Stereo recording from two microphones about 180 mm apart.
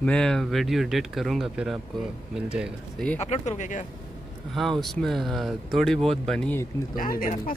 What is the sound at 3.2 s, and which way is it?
Speech, 40° left (ahead or behind).